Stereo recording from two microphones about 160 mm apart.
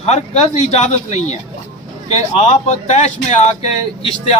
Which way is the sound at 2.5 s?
45° left (ahead or behind).